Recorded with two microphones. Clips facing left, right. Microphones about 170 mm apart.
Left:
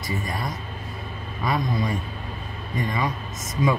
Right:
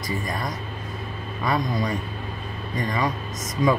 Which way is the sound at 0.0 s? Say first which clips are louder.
Right 1 dB; 25° left (ahead or behind).